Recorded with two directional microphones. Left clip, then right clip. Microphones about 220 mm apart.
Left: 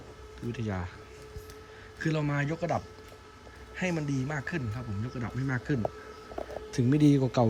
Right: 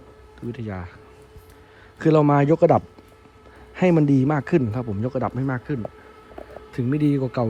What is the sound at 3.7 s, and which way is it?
Speech, 15° right (ahead or behind).